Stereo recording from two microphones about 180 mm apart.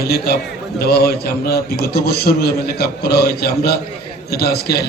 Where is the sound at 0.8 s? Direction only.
60° left (ahead or behind).